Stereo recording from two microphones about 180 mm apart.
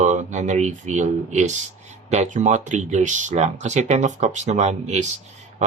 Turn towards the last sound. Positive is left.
turn(degrees=-40)  # may be behind; listen again after turning